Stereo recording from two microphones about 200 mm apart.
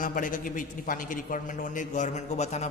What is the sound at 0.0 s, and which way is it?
A man's voice, 40° left (ahead or behind).